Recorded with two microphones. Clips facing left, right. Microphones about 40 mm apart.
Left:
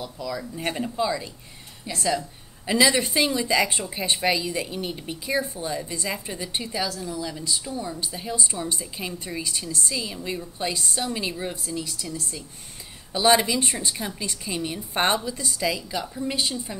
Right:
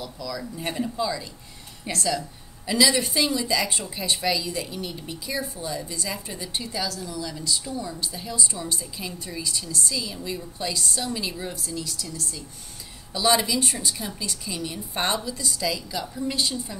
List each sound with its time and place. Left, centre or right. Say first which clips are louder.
0.0 s a woman's voice: left 2 dB; left